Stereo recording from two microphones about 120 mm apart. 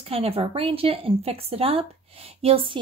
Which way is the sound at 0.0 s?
55° right (ahead or behind).